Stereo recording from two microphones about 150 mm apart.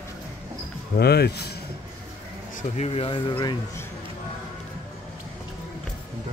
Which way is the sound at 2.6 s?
45° left (ahead or behind).